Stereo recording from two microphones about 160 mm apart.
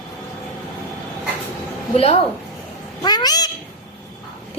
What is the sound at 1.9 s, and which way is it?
Speech, 40° left (ahead or behind).